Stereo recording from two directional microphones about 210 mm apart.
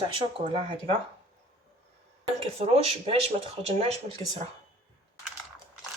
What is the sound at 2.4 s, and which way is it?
A woman's voice, 30° right (ahead or behind).